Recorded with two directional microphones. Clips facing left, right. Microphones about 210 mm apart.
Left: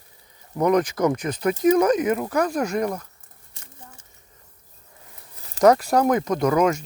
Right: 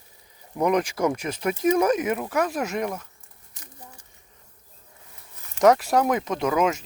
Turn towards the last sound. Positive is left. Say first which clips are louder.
# left 3 dB
turn(degrees=-5)  # may be behind; listen again after turning